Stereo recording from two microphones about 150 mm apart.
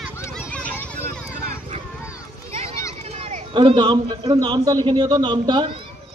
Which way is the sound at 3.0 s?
40° right (ahead or behind).